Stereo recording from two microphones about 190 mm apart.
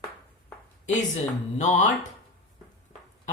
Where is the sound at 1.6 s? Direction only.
40° left (ahead or behind).